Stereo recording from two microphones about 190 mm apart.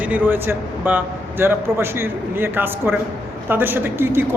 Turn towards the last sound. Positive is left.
turn(degrees=-10)  # may be behind; listen again after turning